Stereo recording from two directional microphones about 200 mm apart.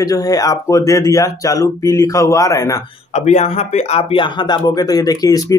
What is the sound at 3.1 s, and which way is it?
Speech, 35° left (ahead or behind).